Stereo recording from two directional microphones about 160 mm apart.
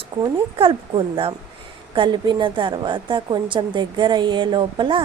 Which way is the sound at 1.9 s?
30° right (ahead or behind).